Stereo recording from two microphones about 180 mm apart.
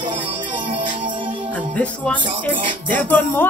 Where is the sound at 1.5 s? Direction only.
5° left (ahead or behind).